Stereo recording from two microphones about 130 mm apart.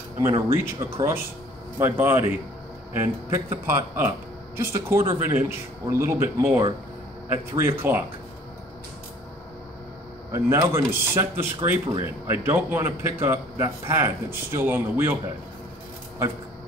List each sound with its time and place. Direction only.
0.2 s a man's voice: 25° right (ahead or behind)
10.3 s a man's voice: 20° right (ahead or behind)